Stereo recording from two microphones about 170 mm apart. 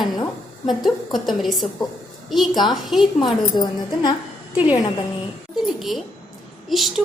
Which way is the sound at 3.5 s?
25° left (ahead or behind).